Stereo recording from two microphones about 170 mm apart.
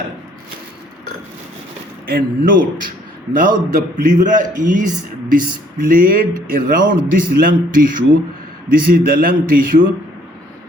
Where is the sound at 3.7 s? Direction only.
50° right (ahead or behind).